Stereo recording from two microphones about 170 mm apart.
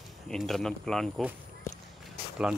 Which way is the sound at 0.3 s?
Centre (ahead or behind).